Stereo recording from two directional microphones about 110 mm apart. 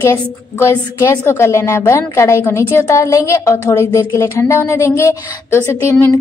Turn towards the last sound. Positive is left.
turn(degrees=20)  # may be behind; listen again after turning